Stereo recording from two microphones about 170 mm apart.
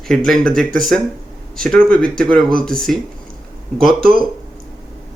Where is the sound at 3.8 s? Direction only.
60° right (ahead or behind).